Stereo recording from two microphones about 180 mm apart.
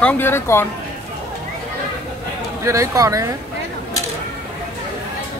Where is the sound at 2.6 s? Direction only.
15° right (ahead or behind).